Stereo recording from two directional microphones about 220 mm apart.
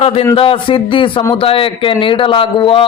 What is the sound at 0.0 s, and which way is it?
A man's voice, 25° left (ahead or behind).